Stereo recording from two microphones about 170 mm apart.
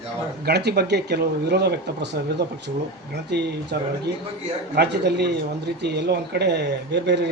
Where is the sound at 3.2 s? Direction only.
80° right.